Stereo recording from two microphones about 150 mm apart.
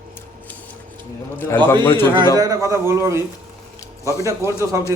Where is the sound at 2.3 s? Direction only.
20° right (ahead or behind).